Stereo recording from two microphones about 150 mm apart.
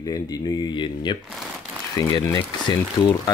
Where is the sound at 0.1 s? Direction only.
30° left (ahead or behind).